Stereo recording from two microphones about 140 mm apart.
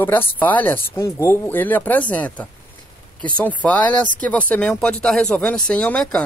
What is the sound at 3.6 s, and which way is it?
Speech, 10° left (ahead or behind).